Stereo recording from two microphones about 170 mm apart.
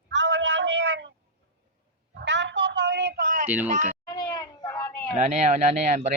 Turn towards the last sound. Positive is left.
turn(degrees=-45)  # may be behind; listen again after turning